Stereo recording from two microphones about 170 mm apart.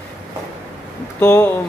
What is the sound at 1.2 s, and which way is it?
Speech, 15° left (ahead or behind).